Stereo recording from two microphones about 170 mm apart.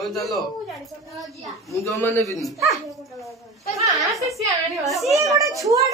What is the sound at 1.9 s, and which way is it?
Speech, 15° left (ahead or behind).